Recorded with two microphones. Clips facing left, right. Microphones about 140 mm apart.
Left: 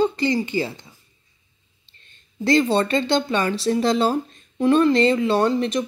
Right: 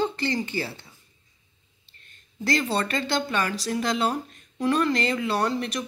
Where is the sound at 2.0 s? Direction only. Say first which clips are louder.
Left 6 dB; 25° left (ahead or behind).